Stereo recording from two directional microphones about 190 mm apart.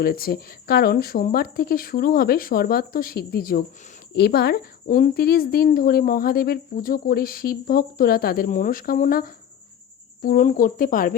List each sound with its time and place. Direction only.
0.0 s speech: 50° left (ahead or behind)